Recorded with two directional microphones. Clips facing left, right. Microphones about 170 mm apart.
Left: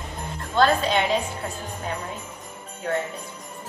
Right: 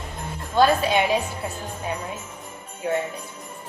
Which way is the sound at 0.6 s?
10° right (ahead or behind).